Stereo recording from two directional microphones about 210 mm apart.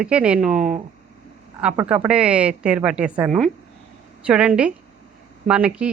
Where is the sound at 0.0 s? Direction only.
5° right (ahead or behind).